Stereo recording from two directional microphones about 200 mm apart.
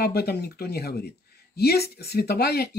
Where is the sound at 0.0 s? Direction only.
55° left (ahead or behind).